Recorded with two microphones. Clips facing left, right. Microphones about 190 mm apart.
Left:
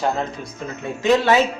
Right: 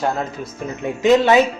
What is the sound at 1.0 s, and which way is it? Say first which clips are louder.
Speech: right 3 dB; 20° right (ahead or behind).